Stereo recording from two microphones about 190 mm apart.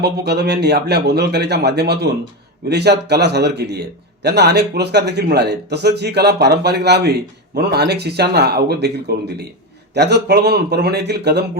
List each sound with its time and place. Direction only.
0.0 s a man's voice: 60° right (ahead or behind)